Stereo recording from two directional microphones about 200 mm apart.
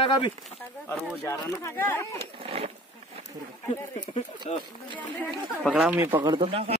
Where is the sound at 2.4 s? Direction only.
30° right (ahead or behind).